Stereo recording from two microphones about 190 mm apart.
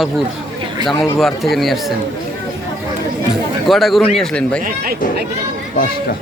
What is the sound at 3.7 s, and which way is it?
Speech, centre (ahead or behind).